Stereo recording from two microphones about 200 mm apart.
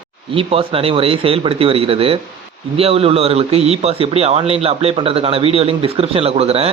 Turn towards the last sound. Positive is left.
turn(degrees=-30)  # may be behind; listen again after turning